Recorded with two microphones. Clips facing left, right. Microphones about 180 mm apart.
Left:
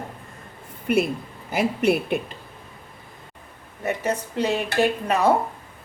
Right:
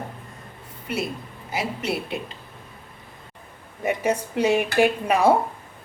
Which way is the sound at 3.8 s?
10° right (ahead or behind).